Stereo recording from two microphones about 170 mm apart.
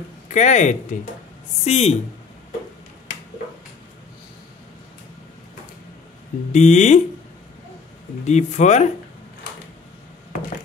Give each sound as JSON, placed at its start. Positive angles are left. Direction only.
{"t": 0.3, "sound": "speech", "side_deg": 45}
{"t": 6.5, "sound": "speech", "side_deg": 45}
{"t": 8.3, "sound": "speech", "side_deg": 40}